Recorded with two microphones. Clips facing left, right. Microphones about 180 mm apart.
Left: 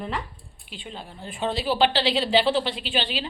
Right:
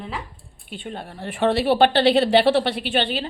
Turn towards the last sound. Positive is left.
turn(degrees=-60)  # may be behind; listen again after turning